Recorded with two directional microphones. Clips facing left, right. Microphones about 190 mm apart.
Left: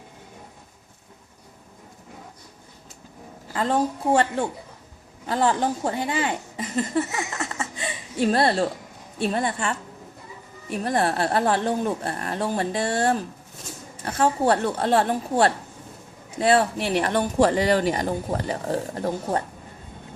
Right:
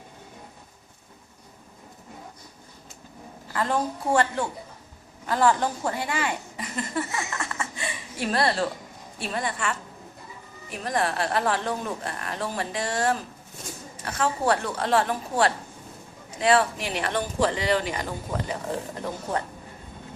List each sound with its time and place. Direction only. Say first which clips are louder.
3.5 s a woman's voice: left 3 dB; 25° left (ahead or behind)
10.9 s a woman's voice: left 3 dB; 30° left (ahead or behind)
16.4 s speech: left 2 dB; 40° left (ahead or behind)